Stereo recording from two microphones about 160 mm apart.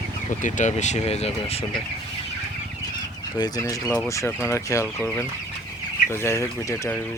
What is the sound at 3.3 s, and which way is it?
Speech, 25° left (ahead or behind).